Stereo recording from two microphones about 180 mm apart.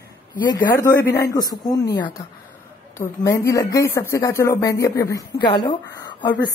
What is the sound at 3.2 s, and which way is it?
A woman's voice, 20° left (ahead or behind).